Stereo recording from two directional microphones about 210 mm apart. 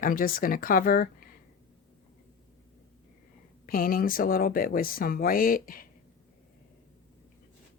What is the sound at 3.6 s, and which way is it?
Speech, 40° left (ahead or behind).